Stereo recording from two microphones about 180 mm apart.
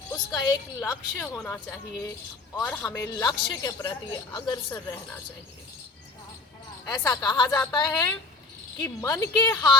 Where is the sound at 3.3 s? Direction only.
25° left (ahead or behind).